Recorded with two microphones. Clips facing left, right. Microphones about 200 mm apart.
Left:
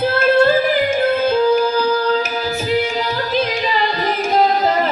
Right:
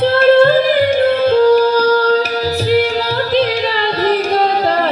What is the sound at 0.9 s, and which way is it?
Music, 70° right (ahead or behind).